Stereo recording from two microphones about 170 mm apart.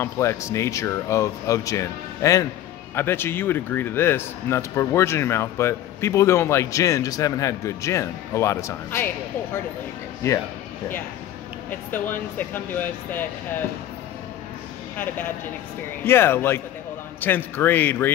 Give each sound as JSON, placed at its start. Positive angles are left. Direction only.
{"t": 0.0, "sound": "speech", "side_deg": 15}
{"t": 11.7, "sound": "speech", "side_deg": 10}
{"t": 15.0, "sound": "speech", "side_deg": 10}